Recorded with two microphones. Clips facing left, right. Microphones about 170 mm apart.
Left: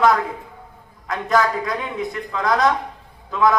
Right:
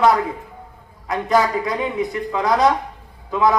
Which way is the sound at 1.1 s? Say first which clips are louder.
Right 1 dB; 15° right (ahead or behind).